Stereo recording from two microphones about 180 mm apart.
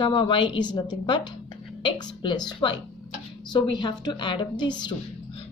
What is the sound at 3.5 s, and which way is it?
Speech, 25° left (ahead or behind).